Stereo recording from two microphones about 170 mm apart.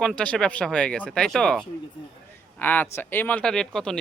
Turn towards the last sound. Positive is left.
turn(degrees=5)  # may be behind; listen again after turning